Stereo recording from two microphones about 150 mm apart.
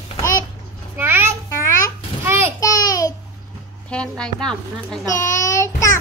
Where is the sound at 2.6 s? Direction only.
20° left (ahead or behind).